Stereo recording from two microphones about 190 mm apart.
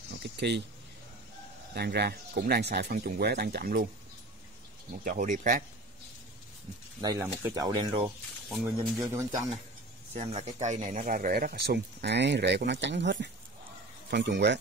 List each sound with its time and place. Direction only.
0.2 s speech: 60° right (ahead or behind)
1.7 s speech: 55° right (ahead or behind)
5.0 s speech: 45° right (ahead or behind)
7.0 s speech: 15° right (ahead or behind)
8.5 s speech: centre (ahead or behind)
9.0 s speech: 15° right (ahead or behind)
10.1 s speech: 35° right (ahead or behind); by 14.6 s 65° right (ahead or behind)